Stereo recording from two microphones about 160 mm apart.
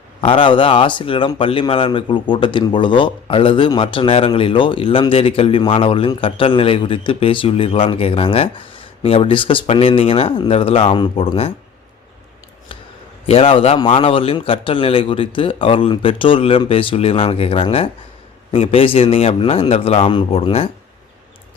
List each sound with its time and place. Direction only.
0.2 s speech: 30° left (ahead or behind)
13.2 s speech: 35° left (ahead or behind)